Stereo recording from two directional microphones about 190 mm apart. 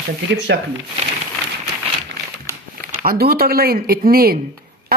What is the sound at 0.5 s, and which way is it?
Speech, 60° right (ahead or behind).